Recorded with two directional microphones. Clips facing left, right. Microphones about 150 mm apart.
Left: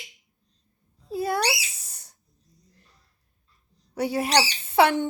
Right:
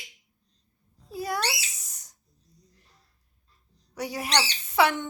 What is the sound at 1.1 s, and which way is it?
Speech, 25° left (ahead or behind).